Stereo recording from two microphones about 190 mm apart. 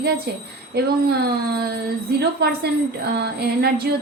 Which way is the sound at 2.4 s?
55° right (ahead or behind).